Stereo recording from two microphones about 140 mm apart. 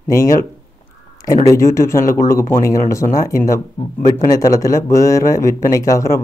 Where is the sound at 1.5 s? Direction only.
20° left (ahead or behind).